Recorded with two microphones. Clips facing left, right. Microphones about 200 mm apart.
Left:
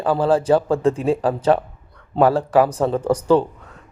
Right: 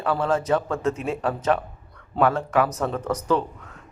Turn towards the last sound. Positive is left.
turn(degrees=30)  # may be behind; listen again after turning